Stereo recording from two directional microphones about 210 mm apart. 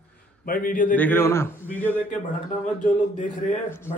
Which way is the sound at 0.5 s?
40° left (ahead or behind).